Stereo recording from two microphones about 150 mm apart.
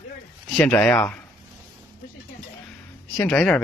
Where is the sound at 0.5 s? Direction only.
10° left (ahead or behind).